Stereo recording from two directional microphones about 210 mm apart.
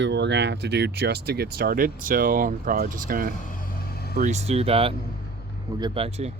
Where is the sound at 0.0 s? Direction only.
55° right (ahead or behind).